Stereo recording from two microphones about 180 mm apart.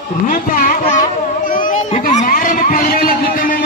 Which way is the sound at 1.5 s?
50° left (ahead or behind).